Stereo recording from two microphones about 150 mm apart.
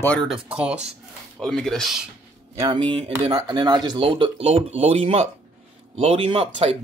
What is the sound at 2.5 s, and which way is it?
Speech, 30° right (ahead or behind).